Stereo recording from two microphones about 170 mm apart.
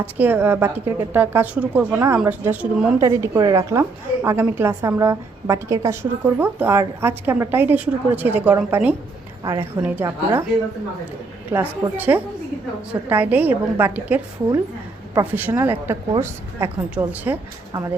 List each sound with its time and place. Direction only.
0.0 s a woman's voice: 10° right (ahead or behind)
11.5 s a woman's voice: 10° right (ahead or behind)